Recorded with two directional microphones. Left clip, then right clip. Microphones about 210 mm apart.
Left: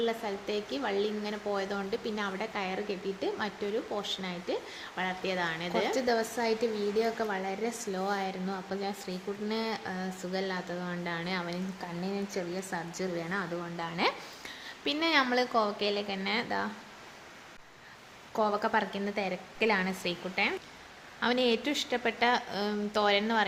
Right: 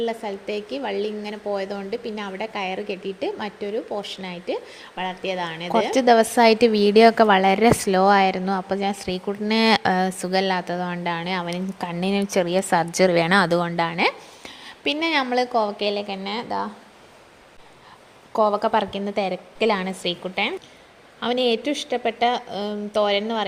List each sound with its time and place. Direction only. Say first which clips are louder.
0.0 s speech: right 6 dB; 15° right (ahead or behind)
5.9 s a woman's voice: right 13 dB; 35° right (ahead or behind); by 16.6 s 15° right (ahead or behind)
18.3 s a woman's voice: right 9 dB; 20° right (ahead or behind)